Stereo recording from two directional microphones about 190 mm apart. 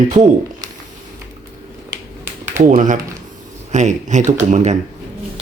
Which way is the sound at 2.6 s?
45° right (ahead or behind).